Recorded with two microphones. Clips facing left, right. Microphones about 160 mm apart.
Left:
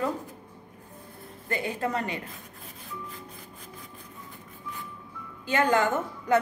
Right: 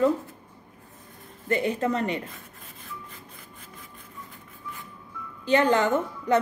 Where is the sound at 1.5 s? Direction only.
25° right (ahead or behind).